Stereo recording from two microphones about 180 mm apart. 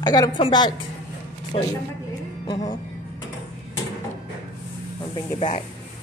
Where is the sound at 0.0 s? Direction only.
20° left (ahead or behind).